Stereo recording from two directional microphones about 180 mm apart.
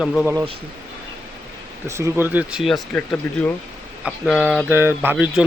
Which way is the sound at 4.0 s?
5° right (ahead or behind).